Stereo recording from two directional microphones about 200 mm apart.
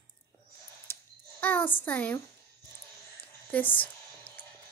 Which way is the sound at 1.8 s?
10° left (ahead or behind).